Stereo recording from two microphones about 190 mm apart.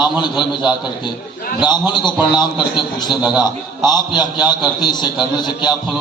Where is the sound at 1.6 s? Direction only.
25° left (ahead or behind).